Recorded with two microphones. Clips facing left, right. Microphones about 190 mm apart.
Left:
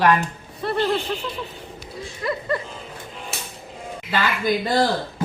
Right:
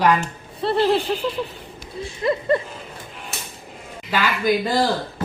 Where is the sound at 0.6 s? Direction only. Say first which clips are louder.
Right 4 dB; 30° right (ahead or behind).